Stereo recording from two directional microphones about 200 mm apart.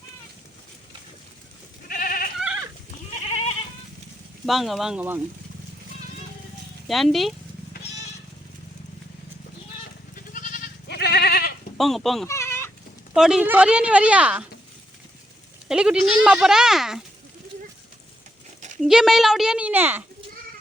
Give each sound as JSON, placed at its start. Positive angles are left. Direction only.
{"t": 1.9, "sound": "goat", "side_deg": 45}
{"t": 2.4, "sound": "goat", "side_deg": -5}
{"t": 4.4, "sound": "speech", "side_deg": 0}
{"t": 6.8, "sound": "speech", "side_deg": 0}
{"t": 10.3, "sound": "goat", "side_deg": 40}
{"t": 11.8, "sound": "speech", "side_deg": 0}
{"t": 12.3, "sound": "goat", "side_deg": 10}
{"t": 13.1, "sound": "speech", "side_deg": -5}
{"t": 15.7, "sound": "speech", "side_deg": -5}
{"t": 18.8, "sound": "speech", "side_deg": 0}